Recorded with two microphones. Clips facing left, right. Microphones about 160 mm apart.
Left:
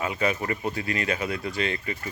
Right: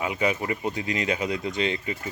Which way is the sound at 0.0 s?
15° right (ahead or behind).